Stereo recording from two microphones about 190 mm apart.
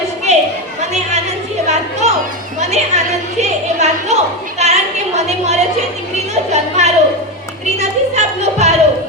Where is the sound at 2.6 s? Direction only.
35° right (ahead or behind).